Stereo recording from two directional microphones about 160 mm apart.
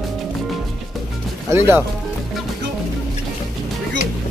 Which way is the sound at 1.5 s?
20° right (ahead or behind).